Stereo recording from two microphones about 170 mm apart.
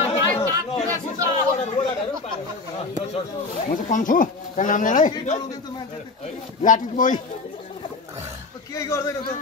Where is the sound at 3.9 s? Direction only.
50° left (ahead or behind).